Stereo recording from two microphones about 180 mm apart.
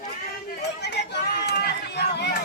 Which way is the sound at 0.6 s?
70° left (ahead or behind).